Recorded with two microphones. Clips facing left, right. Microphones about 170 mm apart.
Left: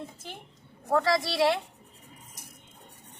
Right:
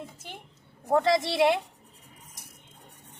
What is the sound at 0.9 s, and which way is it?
Speech, 20° right (ahead or behind).